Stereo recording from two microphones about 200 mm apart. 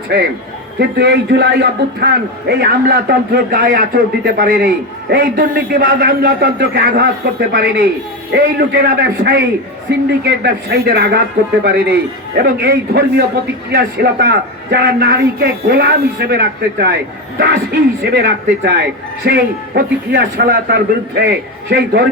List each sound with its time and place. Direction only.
0.8 s a man's voice: 55° right (ahead or behind)